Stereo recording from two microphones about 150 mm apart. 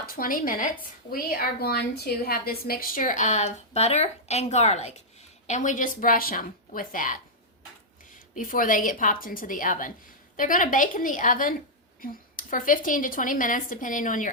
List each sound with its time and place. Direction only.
0.0 s speech: 75° left (ahead or behind)
1.1 s a woman's voice: 80° left; by 7.2 s 65° left (ahead or behind)
8.4 s a woman's voice: 65° left (ahead or behind)